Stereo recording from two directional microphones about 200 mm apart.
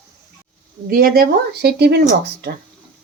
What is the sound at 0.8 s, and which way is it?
Speech, 45° right (ahead or behind).